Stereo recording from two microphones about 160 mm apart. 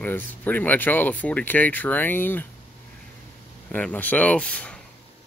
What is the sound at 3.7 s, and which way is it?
Speech, 10° left (ahead or behind).